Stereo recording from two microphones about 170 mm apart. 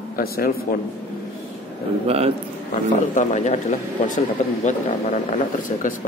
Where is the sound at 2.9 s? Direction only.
45° left (ahead or behind).